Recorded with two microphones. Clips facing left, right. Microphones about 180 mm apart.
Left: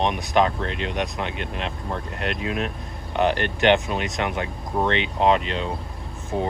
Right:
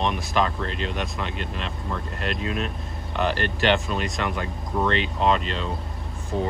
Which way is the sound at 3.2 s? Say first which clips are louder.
Left 3 dB; 20° left (ahead or behind).